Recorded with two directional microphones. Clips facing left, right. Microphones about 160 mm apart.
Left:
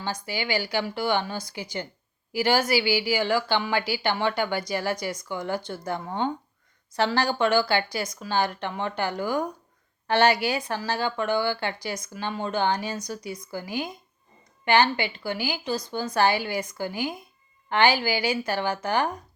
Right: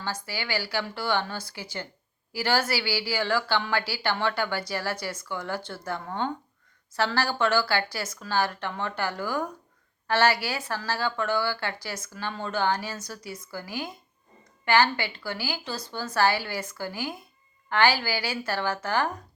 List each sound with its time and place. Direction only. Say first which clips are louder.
0.0 s speech: left 3 dB; 20° left (ahead or behind)